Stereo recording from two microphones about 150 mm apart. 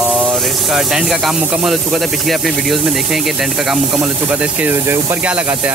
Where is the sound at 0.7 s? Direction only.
Centre (ahead or behind).